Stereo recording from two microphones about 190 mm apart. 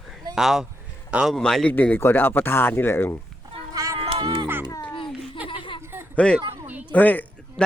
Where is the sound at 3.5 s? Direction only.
20° right (ahead or behind).